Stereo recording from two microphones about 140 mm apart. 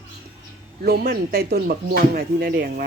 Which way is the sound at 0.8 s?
90° right.